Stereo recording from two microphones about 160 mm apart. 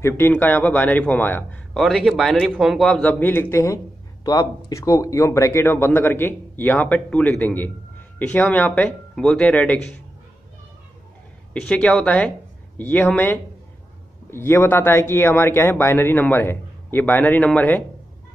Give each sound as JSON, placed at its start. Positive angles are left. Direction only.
{"t": 0.0, "sound": "a man's voice", "side_deg": 10}
{"t": 11.5, "sound": "a man's voice", "side_deg": 5}